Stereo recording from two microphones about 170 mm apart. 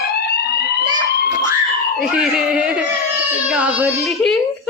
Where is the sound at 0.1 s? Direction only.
75° left (ahead or behind).